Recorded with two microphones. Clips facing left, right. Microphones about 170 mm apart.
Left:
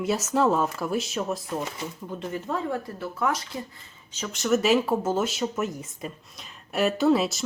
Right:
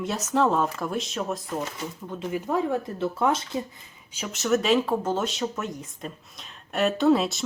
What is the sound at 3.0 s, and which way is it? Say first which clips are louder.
Speech: right 4 dB; 25° right (ahead or behind).